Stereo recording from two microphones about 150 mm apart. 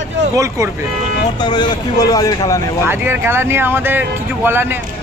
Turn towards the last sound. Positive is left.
turn(degrees=-15)  # may be behind; listen again after turning